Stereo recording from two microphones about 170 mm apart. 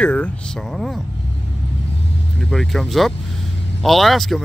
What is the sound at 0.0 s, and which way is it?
Speech, 5° left (ahead or behind).